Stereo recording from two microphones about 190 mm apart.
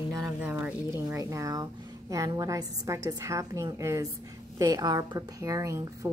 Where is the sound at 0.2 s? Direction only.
10° right (ahead or behind).